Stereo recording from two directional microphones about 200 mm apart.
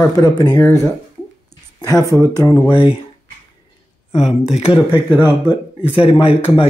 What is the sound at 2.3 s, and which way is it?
Speech, 20° left (ahead or behind).